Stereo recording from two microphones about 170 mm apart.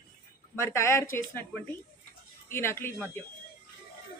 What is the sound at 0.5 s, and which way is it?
Speech, 15° left (ahead or behind).